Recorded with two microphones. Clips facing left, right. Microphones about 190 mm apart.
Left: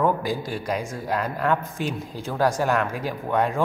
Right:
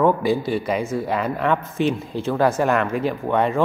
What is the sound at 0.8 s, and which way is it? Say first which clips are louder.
Speech: right 5 dB; 15° left (ahead or behind).